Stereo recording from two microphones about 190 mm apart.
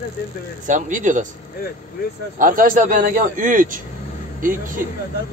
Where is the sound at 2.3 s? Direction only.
45° right (ahead or behind).